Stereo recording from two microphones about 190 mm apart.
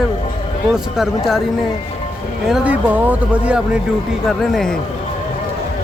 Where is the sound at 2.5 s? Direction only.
10° right (ahead or behind).